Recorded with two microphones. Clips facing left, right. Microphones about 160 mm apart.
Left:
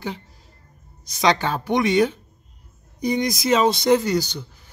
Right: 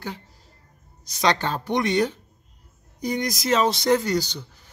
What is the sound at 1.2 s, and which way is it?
Speech, 10° left (ahead or behind).